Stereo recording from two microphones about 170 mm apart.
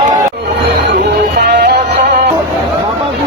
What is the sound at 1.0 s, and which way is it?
Music, 75° right (ahead or behind).